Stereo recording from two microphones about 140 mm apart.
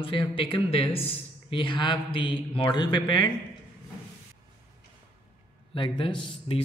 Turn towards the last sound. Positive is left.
turn(degrees=40)  # may be behind; listen again after turning